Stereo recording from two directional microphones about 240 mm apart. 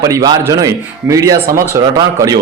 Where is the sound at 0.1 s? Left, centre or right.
Centre.